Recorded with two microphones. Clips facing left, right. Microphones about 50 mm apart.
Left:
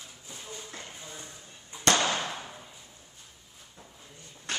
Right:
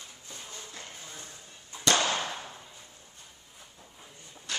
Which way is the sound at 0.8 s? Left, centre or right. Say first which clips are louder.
Left 1 dB; centre.